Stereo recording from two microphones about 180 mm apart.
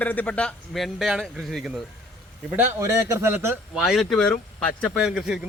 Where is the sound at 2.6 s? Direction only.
15° right (ahead or behind).